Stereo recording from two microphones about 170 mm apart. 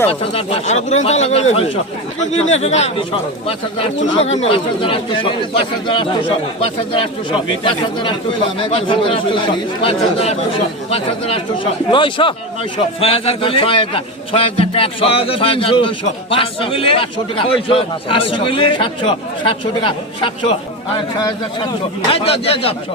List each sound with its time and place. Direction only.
0.1 s a man's voice: 35° left (ahead or behind)
4.1 s a man's voice: 35° left (ahead or behind)